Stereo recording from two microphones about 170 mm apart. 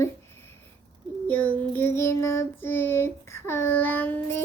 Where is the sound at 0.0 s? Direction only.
15° left (ahead or behind).